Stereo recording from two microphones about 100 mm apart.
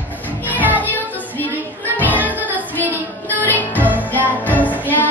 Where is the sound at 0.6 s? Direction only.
20° right (ahead or behind).